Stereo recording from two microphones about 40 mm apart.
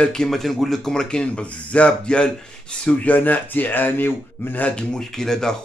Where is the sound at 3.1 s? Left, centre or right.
Left.